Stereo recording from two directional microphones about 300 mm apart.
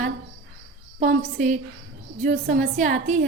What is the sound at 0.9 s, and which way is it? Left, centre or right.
A woman's voice, right.